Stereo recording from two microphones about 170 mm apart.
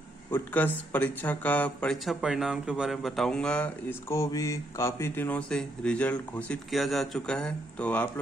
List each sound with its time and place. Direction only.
0.3 s speech: 10° left (ahead or behind)
4.1 s speech: 20° left (ahead or behind)